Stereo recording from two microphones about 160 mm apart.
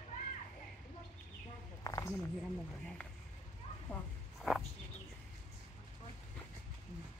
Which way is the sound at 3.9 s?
10° left (ahead or behind).